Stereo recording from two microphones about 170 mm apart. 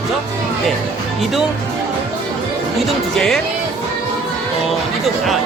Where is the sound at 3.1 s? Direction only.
5° left (ahead or behind).